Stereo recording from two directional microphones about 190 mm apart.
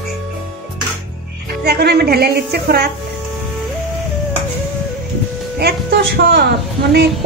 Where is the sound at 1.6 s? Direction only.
55° right (ahead or behind).